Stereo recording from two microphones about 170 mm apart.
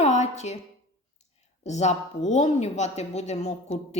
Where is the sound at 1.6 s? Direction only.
40° left (ahead or behind).